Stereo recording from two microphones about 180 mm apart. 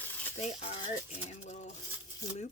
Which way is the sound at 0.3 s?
35° left (ahead or behind).